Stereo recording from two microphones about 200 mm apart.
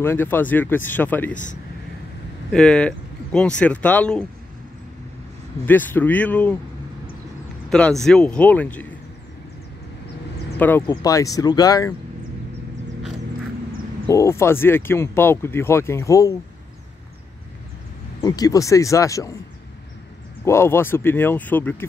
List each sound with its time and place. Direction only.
0.0 s speech: 10° left (ahead or behind)
1.3 s speech: 40° left (ahead or behind)
2.5 s speech: 5° left (ahead or behind)
5.7 s speech: 10° left (ahead or behind)
7.7 s speech: 5° left (ahead or behind)
10.9 s speech: 20° left (ahead or behind)
14.0 s speech: 15° left (ahead or behind)
18.2 s speech: 20° left (ahead or behind)
20.4 s speech: 10° left (ahead or behind)